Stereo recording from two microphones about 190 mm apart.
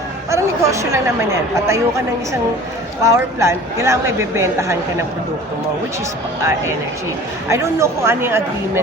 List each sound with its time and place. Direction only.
0.3 s speech: 15° right (ahead or behind)
3.0 s speech: 15° right (ahead or behind)
7.4 s speech: 15° right (ahead or behind)